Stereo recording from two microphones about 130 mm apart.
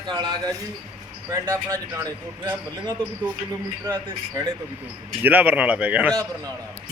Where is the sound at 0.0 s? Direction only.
35° right (ahead or behind).